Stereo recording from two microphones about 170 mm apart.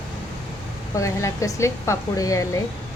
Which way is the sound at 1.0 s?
20° left (ahead or behind).